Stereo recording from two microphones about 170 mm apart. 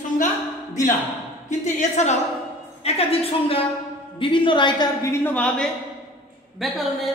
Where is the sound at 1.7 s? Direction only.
45° left (ahead or behind).